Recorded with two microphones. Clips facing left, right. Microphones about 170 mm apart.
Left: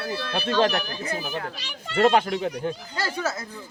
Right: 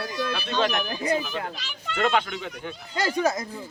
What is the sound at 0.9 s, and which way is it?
Speech, 15° right (ahead or behind).